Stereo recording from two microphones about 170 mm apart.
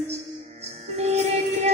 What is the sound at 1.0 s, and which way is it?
Music, 40° right (ahead or behind).